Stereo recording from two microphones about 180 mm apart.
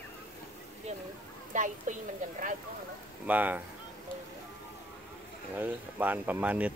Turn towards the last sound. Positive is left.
turn(degrees=-10)  # may be behind; listen again after turning